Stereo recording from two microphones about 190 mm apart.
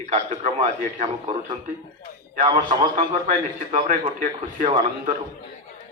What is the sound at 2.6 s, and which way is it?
Speech, 25° right (ahead or behind).